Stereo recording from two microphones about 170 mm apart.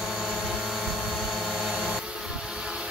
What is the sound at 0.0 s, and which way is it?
Vehicle, centre (ahead or behind).